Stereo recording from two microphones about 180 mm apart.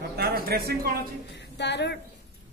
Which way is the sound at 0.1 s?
60° right (ahead or behind).